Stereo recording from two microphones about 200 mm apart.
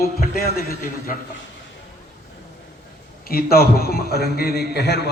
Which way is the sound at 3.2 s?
50° left (ahead or behind).